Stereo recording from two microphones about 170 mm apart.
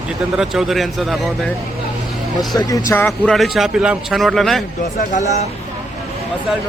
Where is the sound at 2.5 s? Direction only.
20° left (ahead or behind).